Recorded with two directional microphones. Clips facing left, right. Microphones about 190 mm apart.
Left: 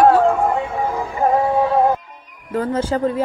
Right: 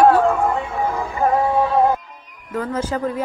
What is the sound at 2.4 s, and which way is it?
Speech, 30° left (ahead or behind).